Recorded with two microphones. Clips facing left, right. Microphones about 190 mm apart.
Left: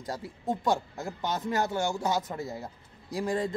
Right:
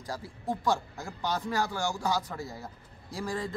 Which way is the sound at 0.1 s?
20° left (ahead or behind).